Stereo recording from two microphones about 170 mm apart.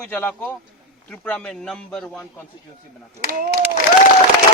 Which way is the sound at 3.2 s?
55° right (ahead or behind).